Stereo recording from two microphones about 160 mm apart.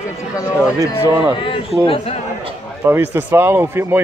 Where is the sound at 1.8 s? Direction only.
35° left (ahead or behind).